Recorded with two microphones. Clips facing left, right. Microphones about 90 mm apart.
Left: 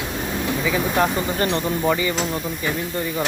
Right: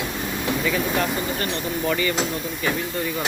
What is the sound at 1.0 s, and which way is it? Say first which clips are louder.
Speech: left 4 dB; 35° left (ahead or behind).